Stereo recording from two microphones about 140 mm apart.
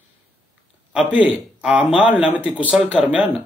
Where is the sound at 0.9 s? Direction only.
10° right (ahead or behind).